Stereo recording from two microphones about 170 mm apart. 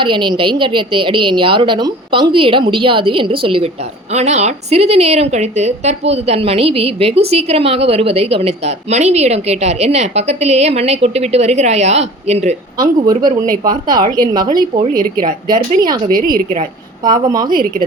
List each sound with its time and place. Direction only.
0.0 s a woman's voice: 30° right (ahead or behind)
13.2 s speech: 55° right (ahead or behind)
13.7 s a woman's voice: 25° right (ahead or behind)
16.0 s a woman's voice: 55° right (ahead or behind)
17.0 s a woman's voice: 25° right (ahead or behind)
17.5 s a woman's voice: 55° right (ahead or behind)